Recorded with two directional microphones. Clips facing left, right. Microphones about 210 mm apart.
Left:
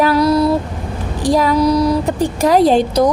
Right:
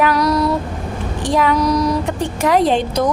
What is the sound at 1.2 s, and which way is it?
A woman's voice, 35° left (ahead or behind).